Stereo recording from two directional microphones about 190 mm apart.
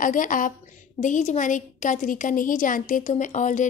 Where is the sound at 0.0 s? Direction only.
45° left (ahead or behind).